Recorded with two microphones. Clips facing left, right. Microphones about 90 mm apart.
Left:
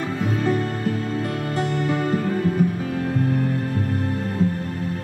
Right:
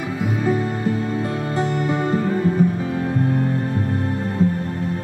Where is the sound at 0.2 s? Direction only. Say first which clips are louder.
Right 2 dB; 15° right (ahead or behind).